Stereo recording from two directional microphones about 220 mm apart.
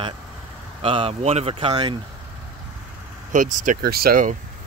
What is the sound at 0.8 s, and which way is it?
Speech, 25° right (ahead or behind).